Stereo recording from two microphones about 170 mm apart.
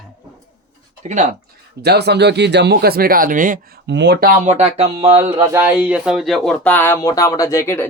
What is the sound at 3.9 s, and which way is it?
Speech, 90° right.